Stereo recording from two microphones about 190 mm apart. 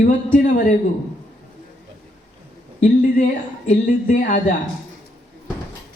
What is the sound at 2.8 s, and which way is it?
Speech, 45° left (ahead or behind).